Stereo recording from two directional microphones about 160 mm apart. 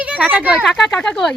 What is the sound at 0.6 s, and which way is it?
Speech, 5° left (ahead or behind).